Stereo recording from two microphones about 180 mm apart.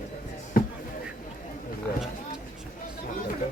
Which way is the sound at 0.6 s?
55° left (ahead or behind).